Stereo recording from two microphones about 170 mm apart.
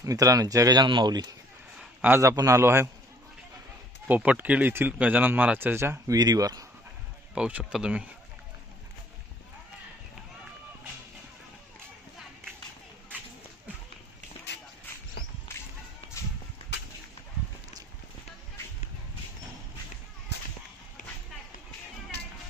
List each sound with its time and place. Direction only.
0.0 s speech: 20° right (ahead or behind)
1.8 s a man's voice: 10° right (ahead or behind)
4.1 s speech: 10° right (ahead or behind)
7.3 s speech: 5° right (ahead or behind)
15.5 s whip: 15° left (ahead or behind)
20.3 s whip: 80° left